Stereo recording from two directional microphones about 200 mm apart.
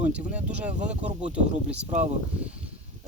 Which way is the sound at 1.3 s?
5° right (ahead or behind).